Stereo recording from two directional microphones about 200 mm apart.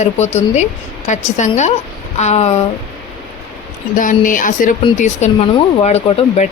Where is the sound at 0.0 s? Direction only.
35° left (ahead or behind).